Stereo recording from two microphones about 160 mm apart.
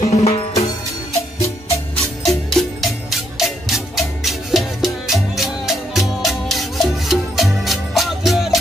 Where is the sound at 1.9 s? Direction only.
Centre (ahead or behind).